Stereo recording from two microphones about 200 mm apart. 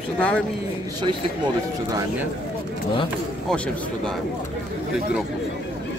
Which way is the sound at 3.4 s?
5° left (ahead or behind).